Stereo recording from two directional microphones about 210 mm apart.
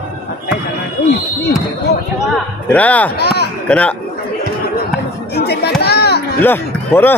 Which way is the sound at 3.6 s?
5° left (ahead or behind).